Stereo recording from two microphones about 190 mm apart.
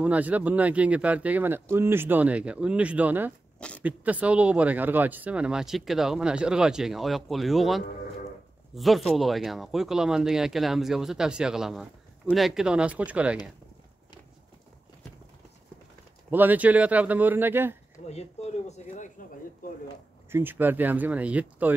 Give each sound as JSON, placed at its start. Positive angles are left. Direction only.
{"t": 0.0, "sound": "speech", "side_deg": -10}
{"t": 3.5, "sound": "a sound", "side_deg": 5}
{"t": 3.8, "sound": "speech", "side_deg": -10}
{"t": 16.3, "sound": "speech", "side_deg": -10}
{"t": 18.7, "sound": "a sound", "side_deg": 40}
{"t": 20.2, "sound": "speech", "side_deg": -10}